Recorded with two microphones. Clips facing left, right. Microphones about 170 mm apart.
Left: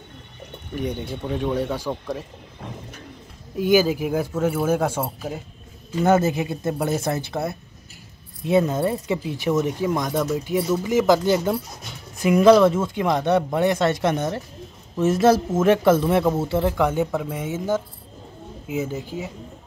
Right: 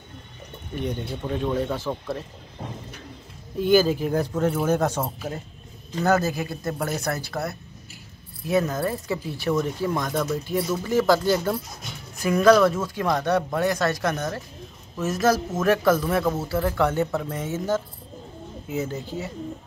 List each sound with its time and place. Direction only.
0.7 s speech: 10° left (ahead or behind)
3.5 s speech: 10° left (ahead or behind)
6.0 s speech: 25° left (ahead or behind)